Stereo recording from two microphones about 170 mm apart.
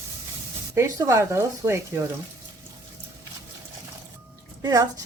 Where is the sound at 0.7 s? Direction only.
20° right (ahead or behind).